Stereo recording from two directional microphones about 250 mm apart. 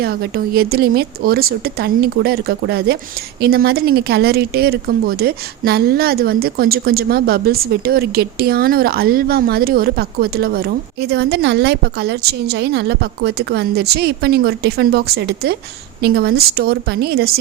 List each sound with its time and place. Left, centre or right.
0.0 s speech: right